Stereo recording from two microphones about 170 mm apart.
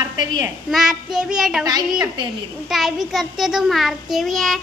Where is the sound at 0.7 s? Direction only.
5° right (ahead or behind).